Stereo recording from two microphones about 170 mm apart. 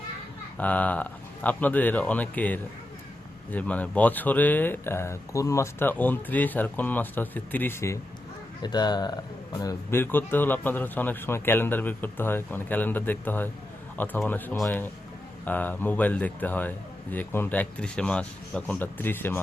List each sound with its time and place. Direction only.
0.6 s speech: 10° left (ahead or behind)